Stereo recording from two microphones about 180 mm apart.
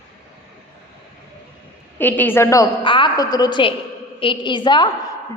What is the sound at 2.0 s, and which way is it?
A woman's voice, 10° left (ahead or behind).